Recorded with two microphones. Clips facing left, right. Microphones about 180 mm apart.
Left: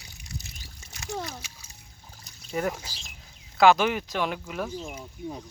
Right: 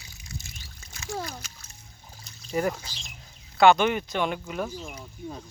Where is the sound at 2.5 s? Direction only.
Centre (ahead or behind).